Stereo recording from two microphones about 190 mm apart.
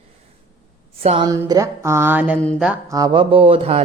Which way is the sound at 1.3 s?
20° right (ahead or behind).